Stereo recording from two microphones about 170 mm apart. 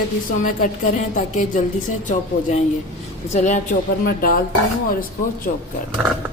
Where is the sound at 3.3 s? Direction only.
45° left (ahead or behind).